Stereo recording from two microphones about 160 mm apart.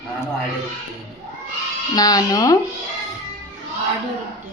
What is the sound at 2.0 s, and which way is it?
Speech, 25° left (ahead or behind).